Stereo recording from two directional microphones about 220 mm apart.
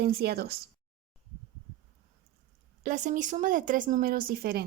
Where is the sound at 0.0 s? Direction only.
45° right (ahead or behind).